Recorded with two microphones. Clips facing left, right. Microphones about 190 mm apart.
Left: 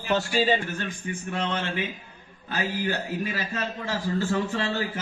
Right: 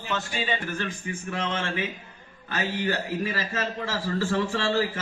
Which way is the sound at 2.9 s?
90° right.